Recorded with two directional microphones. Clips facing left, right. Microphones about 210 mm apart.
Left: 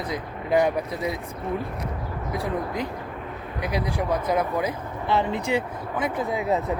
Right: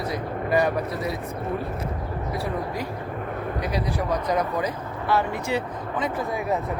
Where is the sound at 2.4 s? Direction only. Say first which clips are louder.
Left 3 dB; 15° left (ahead or behind).